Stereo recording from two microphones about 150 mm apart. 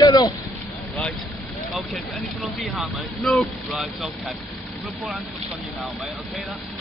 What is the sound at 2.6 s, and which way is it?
Speech, centre (ahead or behind).